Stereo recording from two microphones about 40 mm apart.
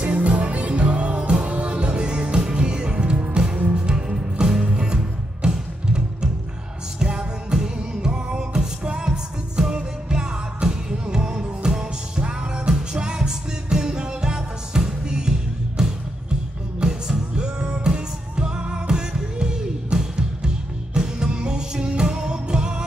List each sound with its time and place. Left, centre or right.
0.0 s music: right